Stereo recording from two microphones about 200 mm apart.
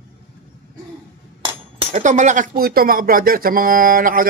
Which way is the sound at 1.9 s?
35° right (ahead or behind).